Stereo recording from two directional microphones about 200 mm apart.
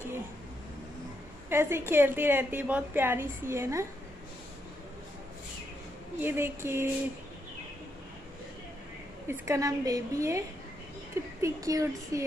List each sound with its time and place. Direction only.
1.5 s a woman's voice: 10° right (ahead or behind)
6.2 s a woman's voice: 10° right (ahead or behind)
9.3 s a woman's voice: 15° right (ahead or behind)
11.4 s a woman's voice: 15° right (ahead or behind)